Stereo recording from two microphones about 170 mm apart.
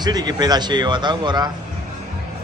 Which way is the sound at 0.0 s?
25° right (ahead or behind).